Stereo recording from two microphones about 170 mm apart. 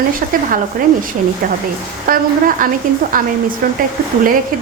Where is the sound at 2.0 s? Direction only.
55° right (ahead or behind).